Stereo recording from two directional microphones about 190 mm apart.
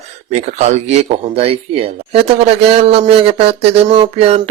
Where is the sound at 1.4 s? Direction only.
30° right (ahead or behind).